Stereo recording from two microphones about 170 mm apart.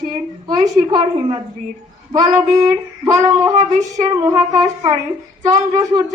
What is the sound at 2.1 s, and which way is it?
Child singing, 20° right (ahead or behind).